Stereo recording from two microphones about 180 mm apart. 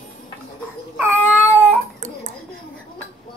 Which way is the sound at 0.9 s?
10° right (ahead or behind).